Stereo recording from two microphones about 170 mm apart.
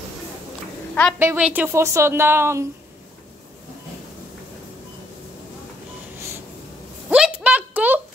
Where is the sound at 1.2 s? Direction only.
10° right (ahead or behind).